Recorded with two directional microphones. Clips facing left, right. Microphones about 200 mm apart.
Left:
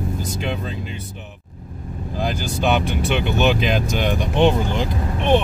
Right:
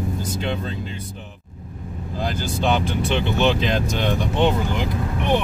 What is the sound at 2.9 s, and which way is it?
Speech, 25° right (ahead or behind).